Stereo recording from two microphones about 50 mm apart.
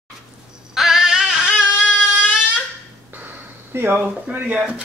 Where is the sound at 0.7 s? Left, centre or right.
Centre.